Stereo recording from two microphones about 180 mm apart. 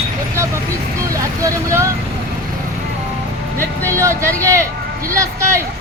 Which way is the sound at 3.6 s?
15° right (ahead or behind).